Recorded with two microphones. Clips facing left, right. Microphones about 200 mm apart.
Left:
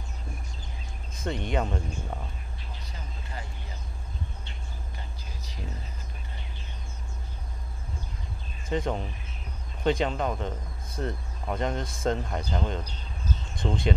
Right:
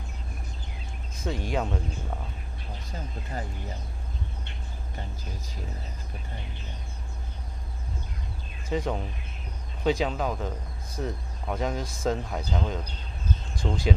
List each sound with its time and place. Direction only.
1.3 s speech: centre (ahead or behind)
2.9 s speech: 45° right (ahead or behind)
8.6 s speech: 5° right (ahead or behind)